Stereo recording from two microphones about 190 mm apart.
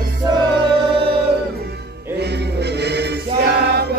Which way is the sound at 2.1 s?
60° right (ahead or behind).